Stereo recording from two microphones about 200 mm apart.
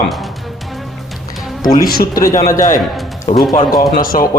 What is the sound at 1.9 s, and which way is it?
Speech, 45° left (ahead or behind).